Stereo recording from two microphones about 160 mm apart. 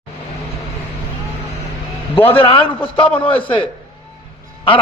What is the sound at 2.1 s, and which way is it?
A man's voice, 35° left (ahead or behind).